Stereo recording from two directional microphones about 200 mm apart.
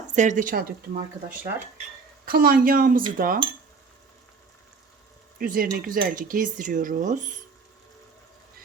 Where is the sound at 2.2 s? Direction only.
45° right (ahead or behind).